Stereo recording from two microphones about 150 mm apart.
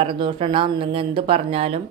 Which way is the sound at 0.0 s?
35° right (ahead or behind).